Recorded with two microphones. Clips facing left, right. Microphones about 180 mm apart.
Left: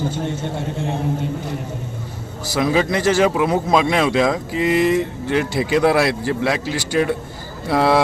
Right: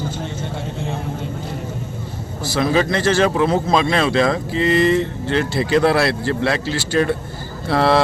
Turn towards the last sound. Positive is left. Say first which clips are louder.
# even
turn(degrees=15)  # may be behind; listen again after turning